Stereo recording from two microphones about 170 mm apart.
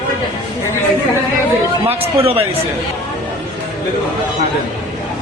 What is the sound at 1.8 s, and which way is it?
Speech, 35° right (ahead or behind).